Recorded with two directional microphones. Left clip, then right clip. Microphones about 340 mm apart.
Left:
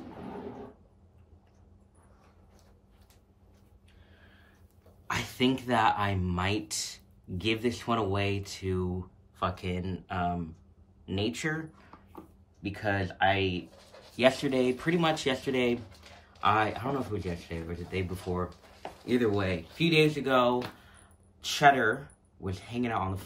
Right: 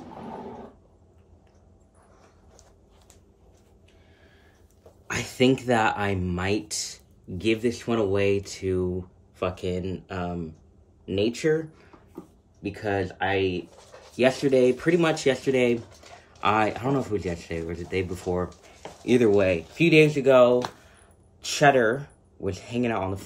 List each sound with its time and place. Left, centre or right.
5.0 s speech: centre
16.3 s a sound: centre
17.1 s speech: centre
21.5 s speech: centre